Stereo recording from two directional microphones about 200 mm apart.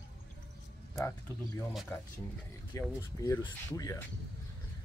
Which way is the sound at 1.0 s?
15° left (ahead or behind).